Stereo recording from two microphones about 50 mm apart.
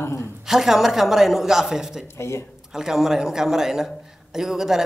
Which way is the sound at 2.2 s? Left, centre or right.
Left.